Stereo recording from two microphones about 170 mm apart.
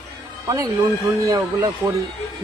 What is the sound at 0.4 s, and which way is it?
Speech, 20° right (ahead or behind).